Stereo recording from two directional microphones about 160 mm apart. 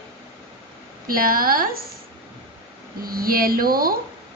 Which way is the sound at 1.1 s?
65° right (ahead or behind).